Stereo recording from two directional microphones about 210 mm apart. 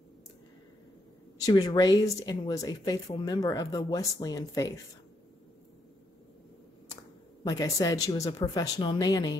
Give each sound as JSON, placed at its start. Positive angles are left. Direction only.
{"t": 1.4, "sound": "a woman's voice", "side_deg": 20}
{"t": 7.4, "sound": "a woman's voice", "side_deg": 15}